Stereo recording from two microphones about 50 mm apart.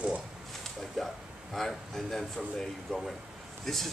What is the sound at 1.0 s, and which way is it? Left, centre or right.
Speech, centre.